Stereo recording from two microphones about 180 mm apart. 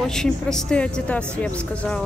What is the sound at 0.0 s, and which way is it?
Speech, 5° left (ahead or behind).